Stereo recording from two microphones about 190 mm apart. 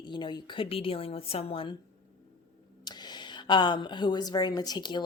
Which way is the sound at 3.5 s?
25° left (ahead or behind).